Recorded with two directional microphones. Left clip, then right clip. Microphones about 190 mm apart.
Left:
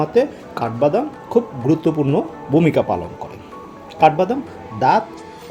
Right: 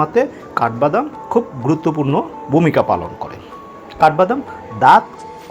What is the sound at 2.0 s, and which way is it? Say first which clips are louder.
Speech: right 1 dB; 30° right (ahead or behind).